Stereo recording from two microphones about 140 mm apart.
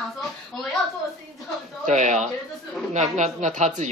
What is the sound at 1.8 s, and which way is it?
Speech, 60° right (ahead or behind).